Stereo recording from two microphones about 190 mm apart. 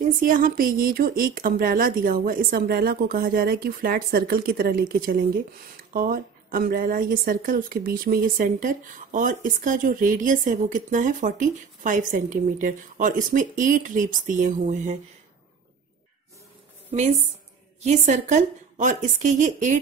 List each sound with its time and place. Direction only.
0.2 s speech: 45° right (ahead or behind)
17.8 s a woman's voice: 40° right (ahead or behind)